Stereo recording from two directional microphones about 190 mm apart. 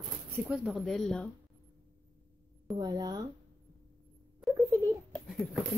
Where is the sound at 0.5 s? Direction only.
Centre (ahead or behind).